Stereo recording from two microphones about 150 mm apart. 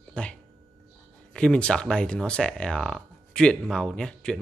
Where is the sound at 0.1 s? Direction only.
5° left (ahead or behind).